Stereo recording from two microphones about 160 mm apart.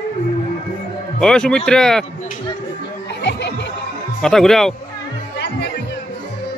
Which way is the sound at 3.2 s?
90° left.